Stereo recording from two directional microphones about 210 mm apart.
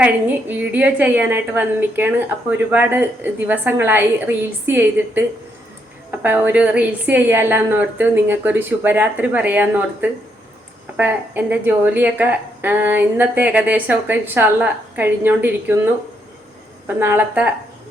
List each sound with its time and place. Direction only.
0.0 s a woman's voice: 5° right (ahead or behind)
16.8 s a woman's voice: 10° right (ahead or behind)